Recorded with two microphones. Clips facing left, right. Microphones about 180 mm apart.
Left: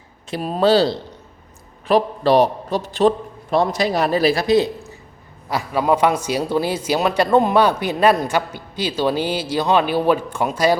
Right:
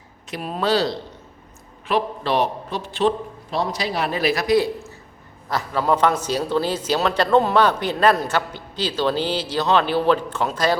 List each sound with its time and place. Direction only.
0.3 s a man's voice: 35° left (ahead or behind)
3.5 s a man's voice: 50° left (ahead or behind); by 4.9 s 20° left (ahead or behind)
5.5 s a man's voice: 10° left (ahead or behind)